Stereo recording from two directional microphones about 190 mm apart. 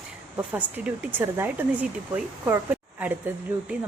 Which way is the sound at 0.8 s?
10° right (ahead or behind).